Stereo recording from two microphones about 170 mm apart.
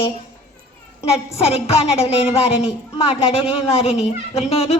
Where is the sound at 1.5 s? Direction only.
35° left (ahead or behind).